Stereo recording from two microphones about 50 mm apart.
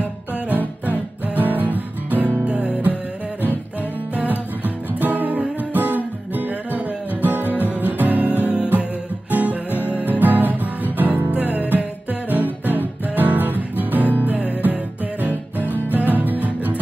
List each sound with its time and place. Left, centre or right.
0.5 s music: right
1.4 s guitar: right
2.4 s music: right
4.1 s music: right
7.4 s music: left
7.7 s music: right
11.4 s music: left
11.7 s music: right
15.7 s music: left
16.1 s music: right